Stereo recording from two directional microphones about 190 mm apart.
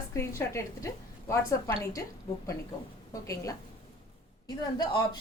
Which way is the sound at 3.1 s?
15° left (ahead or behind).